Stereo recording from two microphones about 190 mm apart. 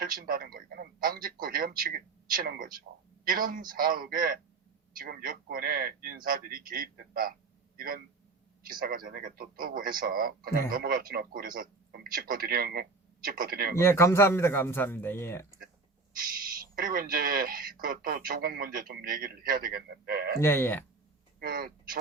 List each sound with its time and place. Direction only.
0.0 s speech: 50° right (ahead or behind)
13.7 s speech: 15° left (ahead or behind)
16.7 s speech: 50° right (ahead or behind)
20.4 s speech: 10° left (ahead or behind)
21.4 s speech: 50° right (ahead or behind)